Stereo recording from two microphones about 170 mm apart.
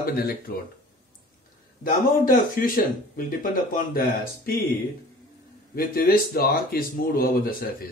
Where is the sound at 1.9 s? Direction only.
55° left (ahead or behind).